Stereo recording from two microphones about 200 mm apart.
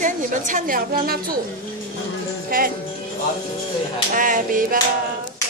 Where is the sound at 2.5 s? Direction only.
45° right (ahead or behind).